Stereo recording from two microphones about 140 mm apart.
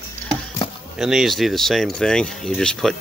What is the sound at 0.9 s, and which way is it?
Speech, 5° right (ahead or behind).